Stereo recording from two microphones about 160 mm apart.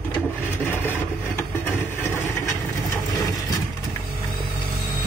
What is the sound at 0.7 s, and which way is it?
Vehicle, 10° left (ahead or behind).